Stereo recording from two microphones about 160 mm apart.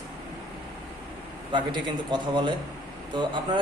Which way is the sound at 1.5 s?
30° right (ahead or behind).